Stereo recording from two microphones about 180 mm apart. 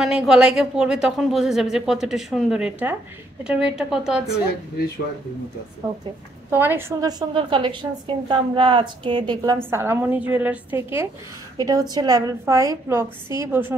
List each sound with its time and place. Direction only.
0.0 s speech: 5° right (ahead or behind)
6.5 s a woman's voice: 10° right (ahead or behind)